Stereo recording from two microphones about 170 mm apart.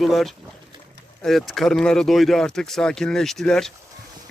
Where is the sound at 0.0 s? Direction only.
Centre (ahead or behind).